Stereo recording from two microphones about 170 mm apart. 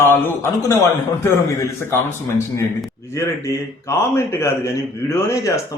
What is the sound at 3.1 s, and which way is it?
A man's voice, 15° left (ahead or behind).